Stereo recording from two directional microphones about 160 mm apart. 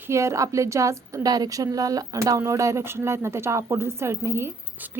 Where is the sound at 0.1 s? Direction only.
20° right (ahead or behind).